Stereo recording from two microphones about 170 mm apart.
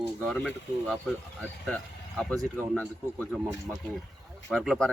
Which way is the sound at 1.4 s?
5° left (ahead or behind).